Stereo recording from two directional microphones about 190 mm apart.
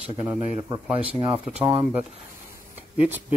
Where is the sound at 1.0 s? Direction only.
30° right (ahead or behind).